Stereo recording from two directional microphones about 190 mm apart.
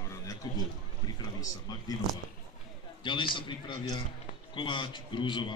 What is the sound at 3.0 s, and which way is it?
A man's voice, 25° left (ahead or behind).